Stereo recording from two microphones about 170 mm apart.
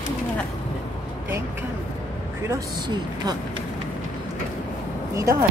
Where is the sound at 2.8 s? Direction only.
25° right (ahead or behind).